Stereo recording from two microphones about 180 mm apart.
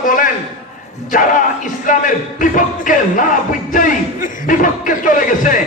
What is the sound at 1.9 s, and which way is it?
Music, 45° left (ahead or behind).